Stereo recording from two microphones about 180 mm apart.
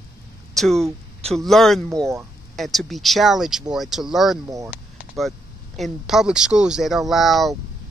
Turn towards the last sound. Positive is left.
turn(degrees=0)  # may be behind; listen again after turning